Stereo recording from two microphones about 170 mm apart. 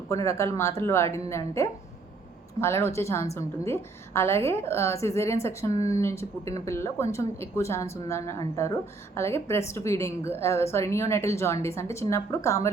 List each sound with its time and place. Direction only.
0.3 s a woman's voice: 15° left (ahead or behind)